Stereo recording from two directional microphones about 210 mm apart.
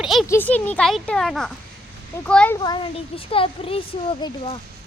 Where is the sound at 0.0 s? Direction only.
Centre (ahead or behind).